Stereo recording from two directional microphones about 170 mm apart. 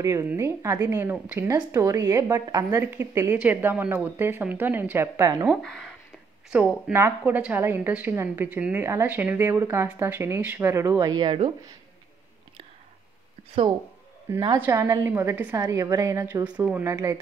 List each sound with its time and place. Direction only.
0.0 s a woman's voice: 15° right (ahead or behind)
6.9 s a woman's voice: 15° right (ahead or behind)
14.6 s a woman's voice: 15° right (ahead or behind)